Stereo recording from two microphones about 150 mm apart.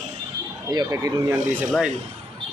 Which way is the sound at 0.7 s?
20° right (ahead or behind).